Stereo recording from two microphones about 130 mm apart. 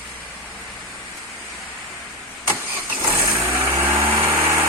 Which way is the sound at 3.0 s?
20° right (ahead or behind).